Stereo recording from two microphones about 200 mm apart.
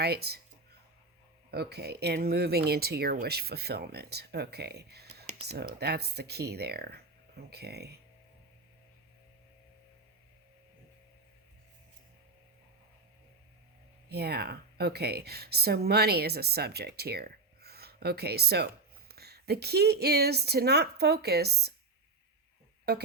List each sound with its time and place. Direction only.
0.0 s speech: 55° right (ahead or behind)
1.5 s speech: 55° right (ahead or behind)
14.1 s speech: 55° right (ahead or behind)
22.9 s speech: 55° right (ahead or behind)